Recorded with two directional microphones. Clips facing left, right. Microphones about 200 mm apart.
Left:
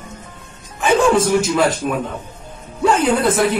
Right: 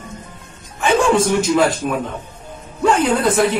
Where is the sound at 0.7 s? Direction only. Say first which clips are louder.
Left 1 dB; 5° left (ahead or behind).